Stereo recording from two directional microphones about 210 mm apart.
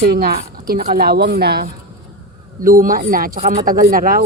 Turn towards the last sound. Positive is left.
turn(degrees=-40)  # may be behind; listen again after turning